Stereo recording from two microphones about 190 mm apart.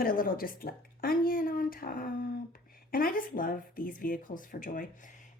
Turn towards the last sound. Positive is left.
turn(degrees=45)  # may be behind; listen again after turning